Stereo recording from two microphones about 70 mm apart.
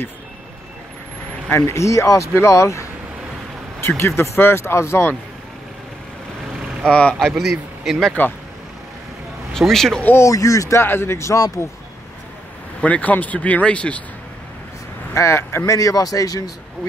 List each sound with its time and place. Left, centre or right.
1.5 s speech: left
6.8 s speech: centre
7.2 s a man's voice: centre
9.5 s speech: centre
10.1 s speech: left
10.8 s speech: left
12.8 s speech: left
15.1 s speech: left
15.7 s speech: left